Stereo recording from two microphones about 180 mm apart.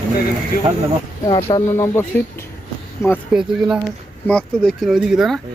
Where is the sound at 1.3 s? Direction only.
30° left (ahead or behind).